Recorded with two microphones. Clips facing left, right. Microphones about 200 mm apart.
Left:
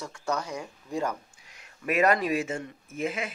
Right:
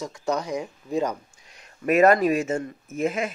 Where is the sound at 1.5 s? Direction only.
40° right (ahead or behind).